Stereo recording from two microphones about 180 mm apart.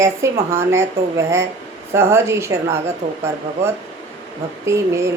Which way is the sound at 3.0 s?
45° right (ahead or behind).